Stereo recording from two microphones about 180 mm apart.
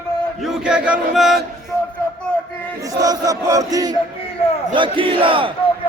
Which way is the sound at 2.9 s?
20° right (ahead or behind).